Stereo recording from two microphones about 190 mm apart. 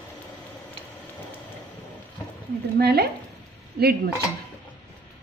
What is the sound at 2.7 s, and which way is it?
Speech, 55° right (ahead or behind).